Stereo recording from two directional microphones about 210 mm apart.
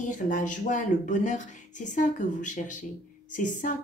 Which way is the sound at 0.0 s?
40° left (ahead or behind).